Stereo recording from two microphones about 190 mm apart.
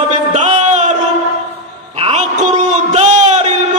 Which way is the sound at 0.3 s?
40° right (ahead or behind).